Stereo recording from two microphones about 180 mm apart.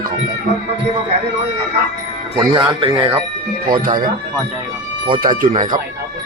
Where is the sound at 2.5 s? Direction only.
30° right (ahead or behind).